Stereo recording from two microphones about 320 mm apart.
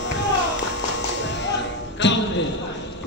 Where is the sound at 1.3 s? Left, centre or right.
Left.